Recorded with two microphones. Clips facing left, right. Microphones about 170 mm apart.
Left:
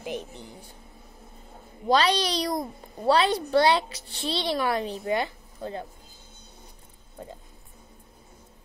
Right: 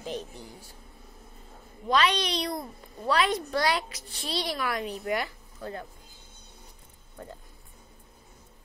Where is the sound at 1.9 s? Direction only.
35° left (ahead or behind).